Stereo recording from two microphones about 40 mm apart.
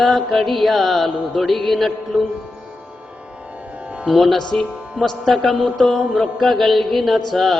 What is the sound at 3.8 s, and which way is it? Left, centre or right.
Music, right.